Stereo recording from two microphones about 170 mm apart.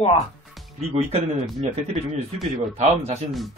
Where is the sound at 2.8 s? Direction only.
40° right (ahead or behind).